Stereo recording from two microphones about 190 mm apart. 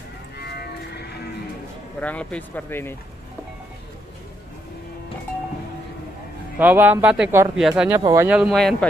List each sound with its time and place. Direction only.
2.0 s speech: 5° left (ahead or behind)
6.6 s speech: 10° right (ahead or behind)
8.0 s speech: 20° right (ahead or behind)
8.3 s speech: 5° right (ahead or behind)